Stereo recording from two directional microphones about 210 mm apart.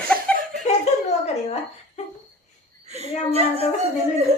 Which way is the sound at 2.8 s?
30° right (ahead or behind).